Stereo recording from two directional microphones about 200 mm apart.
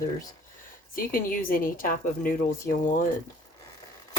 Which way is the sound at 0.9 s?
45° left (ahead or behind).